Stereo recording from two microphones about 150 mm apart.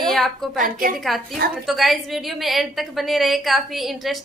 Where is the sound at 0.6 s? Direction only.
70° right (ahead or behind).